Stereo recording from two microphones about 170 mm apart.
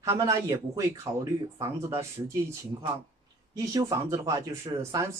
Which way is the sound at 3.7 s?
20° right (ahead or behind).